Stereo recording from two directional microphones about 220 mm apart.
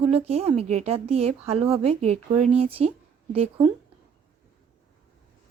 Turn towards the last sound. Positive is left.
turn(degrees=-25)  # may be behind; listen again after turning